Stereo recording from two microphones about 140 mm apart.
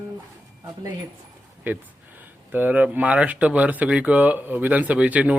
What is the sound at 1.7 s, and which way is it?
A man's voice, 15° right (ahead or behind).